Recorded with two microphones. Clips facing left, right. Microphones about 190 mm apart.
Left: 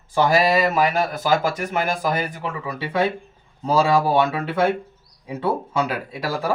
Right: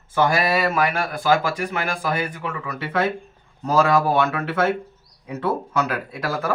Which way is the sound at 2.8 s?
15° left (ahead or behind).